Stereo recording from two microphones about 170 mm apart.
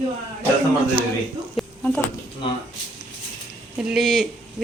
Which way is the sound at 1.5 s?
5° left (ahead or behind).